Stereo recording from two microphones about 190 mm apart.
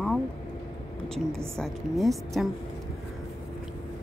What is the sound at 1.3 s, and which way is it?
Speech, centre (ahead or behind).